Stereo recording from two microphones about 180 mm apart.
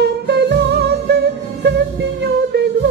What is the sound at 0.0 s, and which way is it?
Music, 70° right (ahead or behind).